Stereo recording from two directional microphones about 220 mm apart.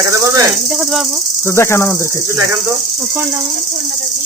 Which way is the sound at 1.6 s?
10° left (ahead or behind).